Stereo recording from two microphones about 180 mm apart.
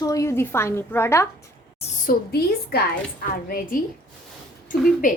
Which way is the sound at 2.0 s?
60° left (ahead or behind).